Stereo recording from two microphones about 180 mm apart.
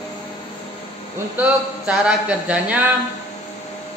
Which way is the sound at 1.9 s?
5° right (ahead or behind).